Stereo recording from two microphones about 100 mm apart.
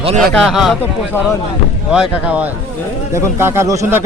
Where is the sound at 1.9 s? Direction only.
10° right (ahead or behind).